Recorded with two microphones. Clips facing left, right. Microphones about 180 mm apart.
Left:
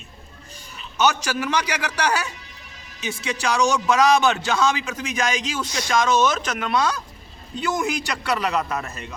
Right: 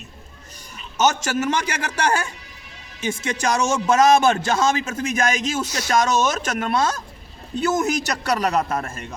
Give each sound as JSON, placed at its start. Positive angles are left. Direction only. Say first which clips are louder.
{"t": 1.0, "sound": "a man's voice", "louder": "right 2 dB", "side_deg": -45}